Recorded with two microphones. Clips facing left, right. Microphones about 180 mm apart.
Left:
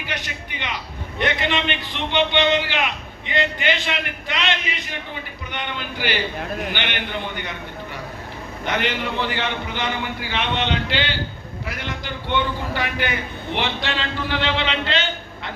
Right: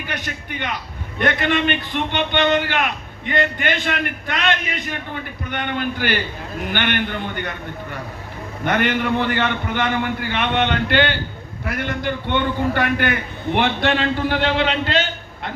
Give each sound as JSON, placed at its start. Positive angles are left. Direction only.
{"t": 0.1, "sound": "a man's voice", "side_deg": -50}
{"t": 8.6, "sound": "a man's voice", "side_deg": -55}